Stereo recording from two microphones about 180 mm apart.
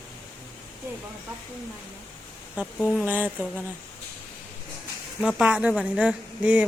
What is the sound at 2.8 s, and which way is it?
Speech, 5° left (ahead or behind).